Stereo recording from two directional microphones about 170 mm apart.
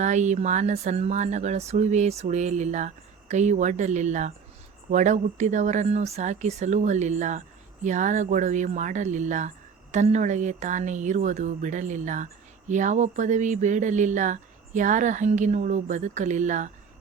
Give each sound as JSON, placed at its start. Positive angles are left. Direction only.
{"t": 0.0, "sound": "speech", "side_deg": -45}